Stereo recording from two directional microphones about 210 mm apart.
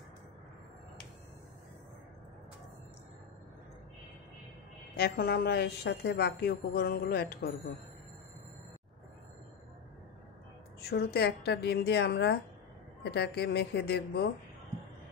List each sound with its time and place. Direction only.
4.9 s speech: 45° left (ahead or behind)
10.8 s speech: 50° left (ahead or behind)